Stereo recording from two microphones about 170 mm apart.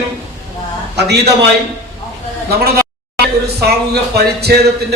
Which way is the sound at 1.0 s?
75° right (ahead or behind).